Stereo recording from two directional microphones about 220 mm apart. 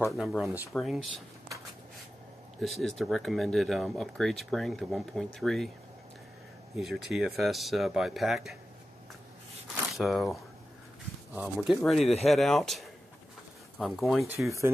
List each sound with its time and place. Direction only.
0.1 s speech: centre (ahead or behind)
2.6 s speech: centre (ahead or behind)
6.7 s speech: centre (ahead or behind)
9.9 s speech: centre (ahead or behind)
14.3 s speech: 10° right (ahead or behind)